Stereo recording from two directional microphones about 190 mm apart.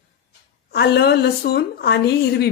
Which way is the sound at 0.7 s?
60° left (ahead or behind).